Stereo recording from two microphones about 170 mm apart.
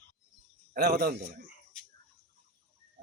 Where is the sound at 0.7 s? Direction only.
70° right (ahead or behind).